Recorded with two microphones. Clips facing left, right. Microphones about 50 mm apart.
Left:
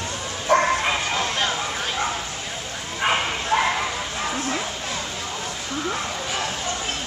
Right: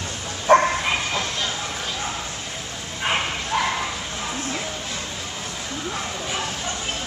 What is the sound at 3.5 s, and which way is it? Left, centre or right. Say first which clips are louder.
Bow-wow: left 3 dB; left.